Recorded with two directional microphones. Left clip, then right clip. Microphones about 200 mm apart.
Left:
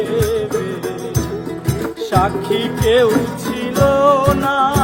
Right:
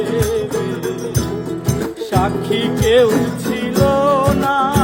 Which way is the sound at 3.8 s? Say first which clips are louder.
Left 2 dB; 5° right (ahead or behind).